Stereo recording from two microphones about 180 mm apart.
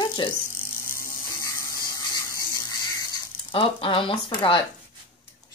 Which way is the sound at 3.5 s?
30° left (ahead or behind).